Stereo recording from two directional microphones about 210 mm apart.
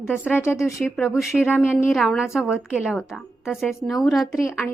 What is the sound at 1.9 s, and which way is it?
A woman's voice, centre (ahead or behind).